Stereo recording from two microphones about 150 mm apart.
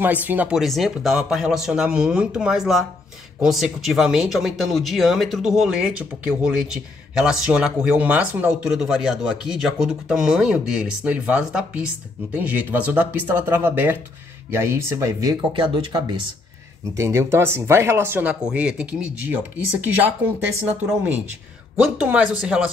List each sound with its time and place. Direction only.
0.0 s speech: 10° right (ahead or behind)
15.5 s speech: 35° right (ahead or behind)
16.9 s speech: 20° right (ahead or behind)